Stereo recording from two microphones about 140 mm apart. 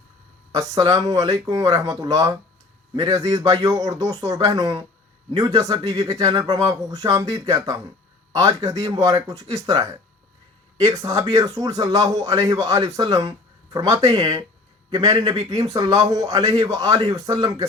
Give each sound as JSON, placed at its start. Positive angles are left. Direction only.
{"t": 0.5, "sound": "a man's voice", "side_deg": -25}
{"t": 15.4, "sound": "a man's voice", "side_deg": -25}